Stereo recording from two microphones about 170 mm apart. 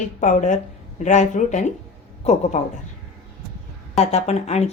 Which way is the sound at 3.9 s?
40° left (ahead or behind).